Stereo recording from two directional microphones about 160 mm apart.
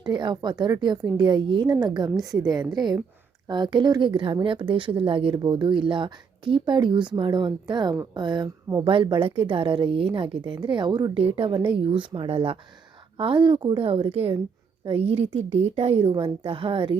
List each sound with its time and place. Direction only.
0.0 s a woman's voice: 30° right (ahead or behind)